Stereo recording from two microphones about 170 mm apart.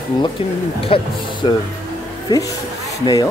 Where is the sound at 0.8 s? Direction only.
30° left (ahead or behind).